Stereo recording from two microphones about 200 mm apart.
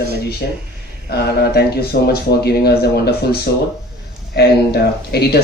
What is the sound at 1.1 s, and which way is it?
A man's voice, 55° left (ahead or behind).